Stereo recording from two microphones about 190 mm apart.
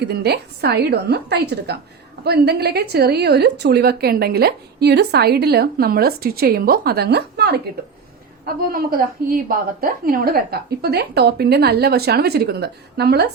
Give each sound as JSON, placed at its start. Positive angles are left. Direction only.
{"t": 0.0, "sound": "a woman's voice", "side_deg": -60}